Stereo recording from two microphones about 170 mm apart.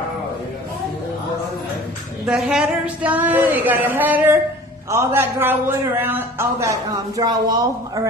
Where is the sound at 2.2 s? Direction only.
5° right (ahead or behind).